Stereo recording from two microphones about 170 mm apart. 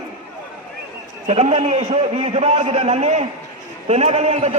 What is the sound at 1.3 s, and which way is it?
A man's voice, 40° right (ahead or behind).